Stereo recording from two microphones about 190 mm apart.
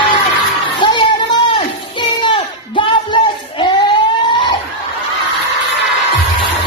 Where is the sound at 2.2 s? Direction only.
25° left (ahead or behind).